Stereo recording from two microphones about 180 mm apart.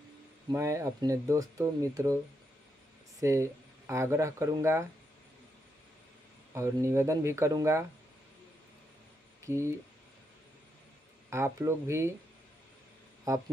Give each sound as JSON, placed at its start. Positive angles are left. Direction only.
{"t": 0.5, "sound": "speech", "side_deg": -15}
{"t": 3.2, "sound": "speech", "side_deg": -15}
{"t": 6.5, "sound": "speech", "side_deg": -15}
{"t": 9.4, "sound": "speech", "side_deg": -15}
{"t": 11.2, "sound": "speech", "side_deg": -15}
{"t": 13.3, "sound": "speech", "side_deg": -15}